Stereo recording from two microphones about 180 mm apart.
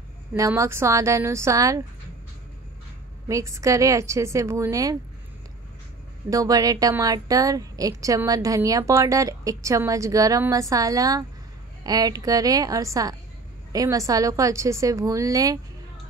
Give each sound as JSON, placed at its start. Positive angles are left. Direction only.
{"t": 0.4, "sound": "a woman's voice", "side_deg": -15}
{"t": 3.3, "sound": "a woman's voice", "side_deg": -15}
{"t": 6.3, "sound": "a woman's voice", "side_deg": -20}